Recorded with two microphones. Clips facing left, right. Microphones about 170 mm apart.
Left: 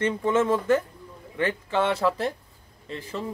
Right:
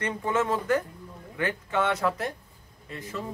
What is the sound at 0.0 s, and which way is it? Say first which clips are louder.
Speech: left 4 dB; 25° left (ahead or behind).